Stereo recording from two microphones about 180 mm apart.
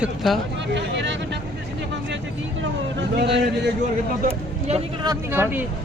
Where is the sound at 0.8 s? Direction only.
75° right (ahead or behind).